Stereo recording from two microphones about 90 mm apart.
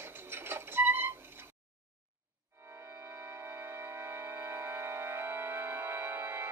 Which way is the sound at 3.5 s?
30° right (ahead or behind).